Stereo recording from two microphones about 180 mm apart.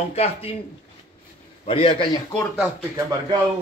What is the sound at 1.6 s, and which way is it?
Speech, 30° left (ahead or behind).